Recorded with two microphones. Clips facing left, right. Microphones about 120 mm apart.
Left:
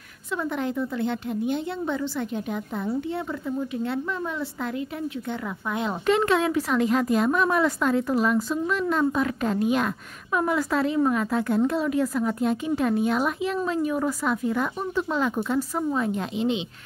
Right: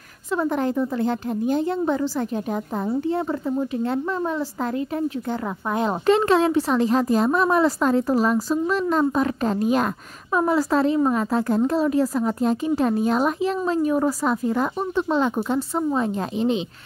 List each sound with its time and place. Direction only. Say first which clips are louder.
0.3 s speech: right 5 dB; 40° right (ahead or behind)